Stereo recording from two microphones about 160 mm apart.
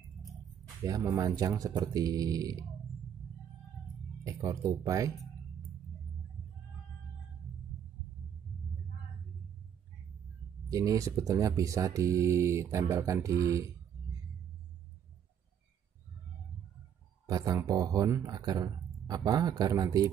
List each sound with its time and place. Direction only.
0.8 s speech: 20° right (ahead or behind)
4.3 s speech: 20° right (ahead or behind)
10.7 s speech: 20° right (ahead or behind)
17.3 s speech: 20° right (ahead or behind)